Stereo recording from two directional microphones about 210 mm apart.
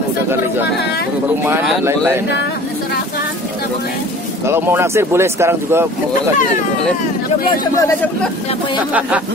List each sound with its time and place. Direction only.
1.4 s speech: 10° right (ahead or behind)
4.5 s speech: 10° right (ahead or behind)